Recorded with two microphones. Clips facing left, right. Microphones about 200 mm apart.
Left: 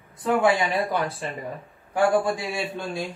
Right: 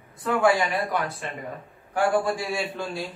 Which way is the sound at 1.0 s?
Centre (ahead or behind).